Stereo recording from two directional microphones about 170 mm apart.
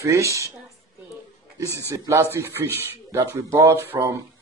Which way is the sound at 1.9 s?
15° right (ahead or behind).